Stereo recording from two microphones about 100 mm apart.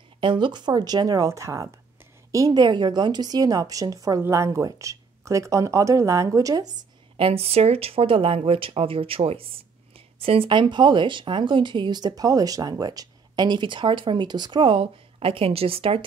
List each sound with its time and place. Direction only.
0.2 s speech: 55° right (ahead or behind); by 6.7 s 40° right (ahead or behind)
7.2 s speech: 70° right (ahead or behind)